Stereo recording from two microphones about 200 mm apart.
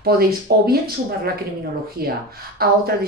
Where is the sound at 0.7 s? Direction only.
50° right (ahead or behind).